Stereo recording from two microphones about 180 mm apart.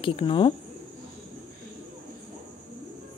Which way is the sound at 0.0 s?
30° left (ahead or behind).